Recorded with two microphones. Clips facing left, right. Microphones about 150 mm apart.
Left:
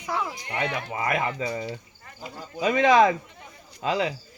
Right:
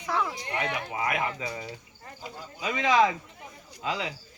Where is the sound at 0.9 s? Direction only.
40° left (ahead or behind).